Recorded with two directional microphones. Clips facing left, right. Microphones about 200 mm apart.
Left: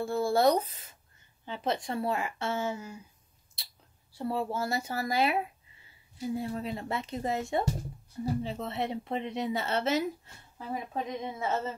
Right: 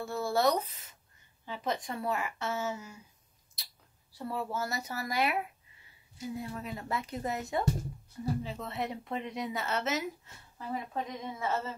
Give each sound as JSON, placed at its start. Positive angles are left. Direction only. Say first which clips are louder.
{"t": 0.0, "sound": "speech", "louder": "left 4 dB", "side_deg": 30}
{"t": 4.1, "sound": "speech", "louder": "left 4 dB", "side_deg": 30}